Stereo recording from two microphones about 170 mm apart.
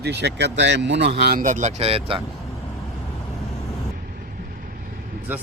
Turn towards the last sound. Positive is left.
turn(degrees=-10)  # may be behind; listen again after turning